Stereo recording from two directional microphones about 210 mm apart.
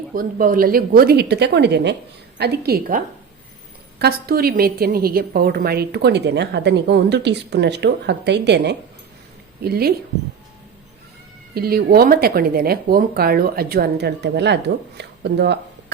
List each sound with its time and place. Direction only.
0.1 s a woman's voice: 40° right (ahead or behind)
11.5 s a woman's voice: 45° right (ahead or behind)